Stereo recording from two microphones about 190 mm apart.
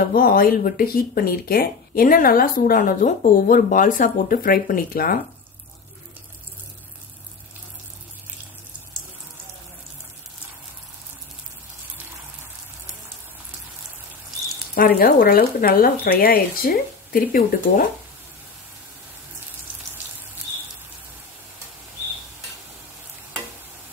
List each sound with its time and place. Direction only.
0.0 s speech: 50° left (ahead or behind)
14.8 s speech: 55° left (ahead or behind)